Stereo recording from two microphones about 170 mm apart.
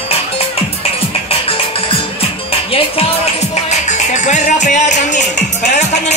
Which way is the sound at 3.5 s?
45° left (ahead or behind).